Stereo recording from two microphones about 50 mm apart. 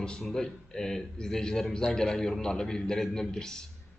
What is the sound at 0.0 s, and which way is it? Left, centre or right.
A man's voice, centre.